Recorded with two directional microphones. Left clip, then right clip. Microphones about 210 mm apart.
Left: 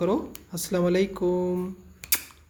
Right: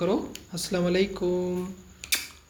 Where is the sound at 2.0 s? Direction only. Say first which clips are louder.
Right 2 dB; 45° left (ahead or behind).